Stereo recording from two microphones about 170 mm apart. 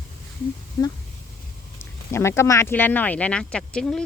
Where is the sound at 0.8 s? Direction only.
20° left (ahead or behind).